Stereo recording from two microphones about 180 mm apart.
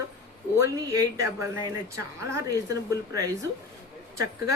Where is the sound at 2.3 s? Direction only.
20° right (ahead or behind).